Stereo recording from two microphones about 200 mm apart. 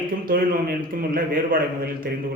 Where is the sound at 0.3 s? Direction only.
45° right (ahead or behind).